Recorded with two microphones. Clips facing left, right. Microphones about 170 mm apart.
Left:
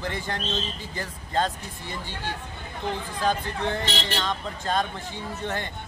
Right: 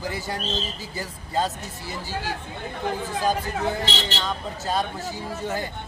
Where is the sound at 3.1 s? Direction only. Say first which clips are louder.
Right 1 dB; 10° right (ahead or behind).